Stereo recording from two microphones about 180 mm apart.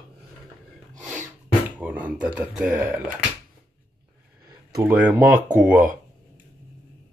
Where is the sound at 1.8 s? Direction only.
5° right (ahead or behind).